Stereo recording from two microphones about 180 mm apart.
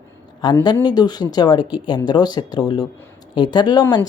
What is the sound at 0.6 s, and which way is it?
Speech, 25° left (ahead or behind).